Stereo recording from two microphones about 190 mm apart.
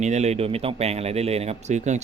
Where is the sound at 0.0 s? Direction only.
35° right (ahead or behind).